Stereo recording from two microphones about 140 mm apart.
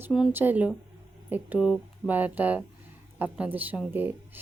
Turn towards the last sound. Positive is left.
turn(degrees=-15)  # may be behind; listen again after turning